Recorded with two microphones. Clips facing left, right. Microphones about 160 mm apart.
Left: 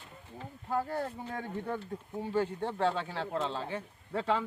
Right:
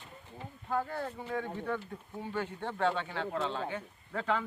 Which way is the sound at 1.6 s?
30° left (ahead or behind).